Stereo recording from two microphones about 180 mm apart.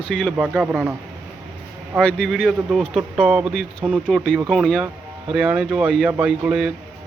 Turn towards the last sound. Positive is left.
turn(degrees=-5)  # may be behind; listen again after turning